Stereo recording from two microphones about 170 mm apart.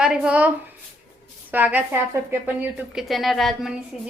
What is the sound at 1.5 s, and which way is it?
A woman's voice, 10° right (ahead or behind).